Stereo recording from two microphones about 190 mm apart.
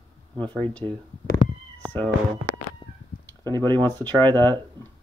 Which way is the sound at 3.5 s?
25° right (ahead or behind).